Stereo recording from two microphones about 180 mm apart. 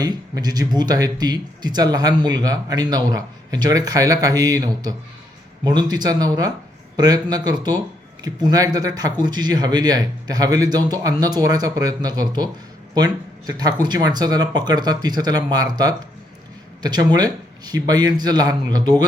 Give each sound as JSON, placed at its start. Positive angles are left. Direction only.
{"t": 0.0, "sound": "speech", "side_deg": -20}
{"t": 13.5, "sound": "speech", "side_deg": -20}